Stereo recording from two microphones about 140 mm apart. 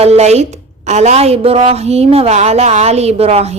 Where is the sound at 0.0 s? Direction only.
50° right (ahead or behind).